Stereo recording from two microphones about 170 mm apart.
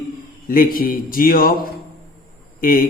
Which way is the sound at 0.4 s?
55° left (ahead or behind).